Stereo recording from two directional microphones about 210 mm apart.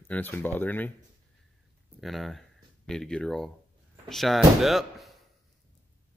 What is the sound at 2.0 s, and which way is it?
Speech, centre (ahead or behind).